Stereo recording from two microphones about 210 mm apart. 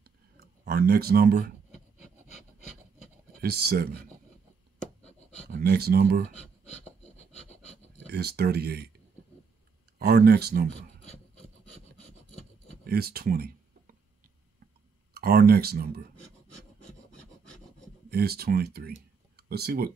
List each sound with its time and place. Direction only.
0.0 s a sound: 45° right (ahead or behind)
3.3 s speech: 50° right (ahead or behind)
5.5 s speech: 50° right (ahead or behind)
6.3 s filing: 30° left (ahead or behind)
8.1 s speech: 50° right (ahead or behind)
9.9 s speech: 50° right (ahead or behind)
12.8 s a sound: 45° right (ahead or behind)
15.1 s speech: 45° right (ahead or behind)
18.1 s speech: 50° right (ahead or behind)